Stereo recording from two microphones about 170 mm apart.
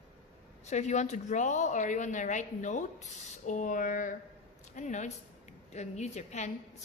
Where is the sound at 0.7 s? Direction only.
45° left (ahead or behind).